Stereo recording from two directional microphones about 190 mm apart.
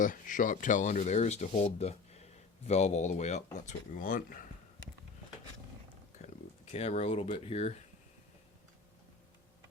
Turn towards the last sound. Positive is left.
turn(degrees=35)  # may be behind; listen again after turning